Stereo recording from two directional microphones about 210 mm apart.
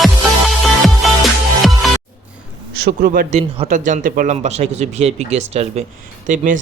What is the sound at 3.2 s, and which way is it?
Speech, 30° right (ahead or behind).